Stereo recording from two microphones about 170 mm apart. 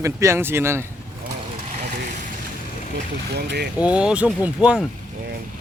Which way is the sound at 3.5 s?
80° right.